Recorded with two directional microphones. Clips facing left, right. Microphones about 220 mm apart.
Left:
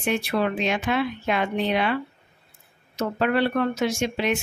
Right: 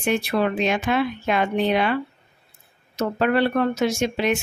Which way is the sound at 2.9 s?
45° right (ahead or behind).